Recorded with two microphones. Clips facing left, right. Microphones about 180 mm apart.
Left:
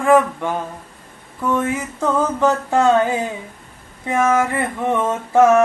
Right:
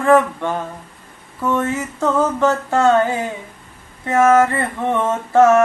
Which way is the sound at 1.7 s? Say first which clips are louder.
Right 1 dB; 15° left (ahead or behind).